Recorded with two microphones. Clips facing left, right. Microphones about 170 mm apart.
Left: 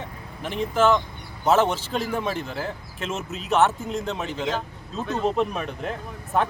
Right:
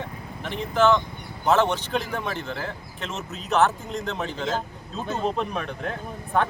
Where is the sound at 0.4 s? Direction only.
5° left (ahead or behind).